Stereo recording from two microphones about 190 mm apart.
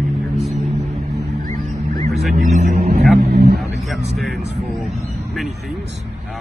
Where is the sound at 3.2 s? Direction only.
55° right (ahead or behind).